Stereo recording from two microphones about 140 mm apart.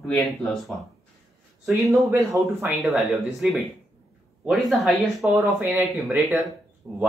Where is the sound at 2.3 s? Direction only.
15° right (ahead or behind).